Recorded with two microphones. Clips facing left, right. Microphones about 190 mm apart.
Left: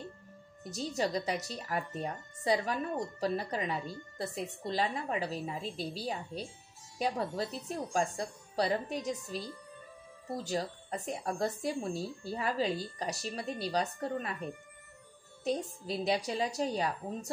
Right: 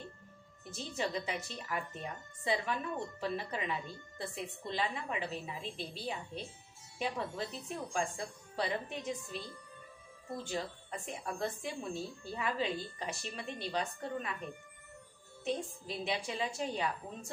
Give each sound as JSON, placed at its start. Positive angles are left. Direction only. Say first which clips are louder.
{"t": 0.7, "sound": "speech", "louder": "left 5 dB", "side_deg": 40}